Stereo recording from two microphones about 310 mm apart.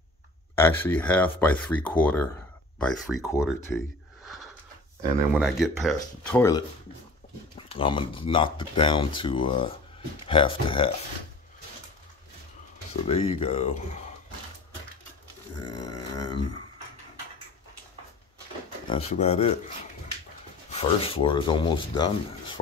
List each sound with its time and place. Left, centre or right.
0.6 s speech: centre
13.0 s speech: centre
15.7 s speech: centre
18.9 s speech: centre
20.7 s speech: centre